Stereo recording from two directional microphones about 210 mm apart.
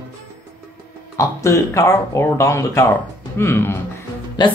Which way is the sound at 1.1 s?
15° left (ahead or behind).